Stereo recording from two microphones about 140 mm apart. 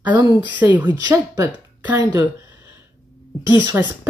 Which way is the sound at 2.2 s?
20° right (ahead or behind).